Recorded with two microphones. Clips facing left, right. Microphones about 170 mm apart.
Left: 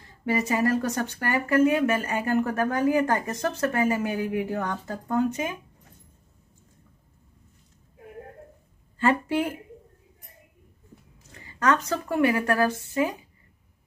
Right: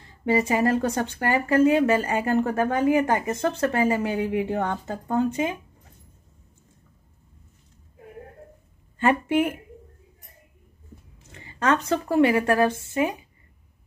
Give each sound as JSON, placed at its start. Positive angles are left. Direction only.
{"t": 0.2, "sound": "speech", "side_deg": -25}
{"t": 8.9, "sound": "speech", "side_deg": -20}
{"t": 11.3, "sound": "speech", "side_deg": -25}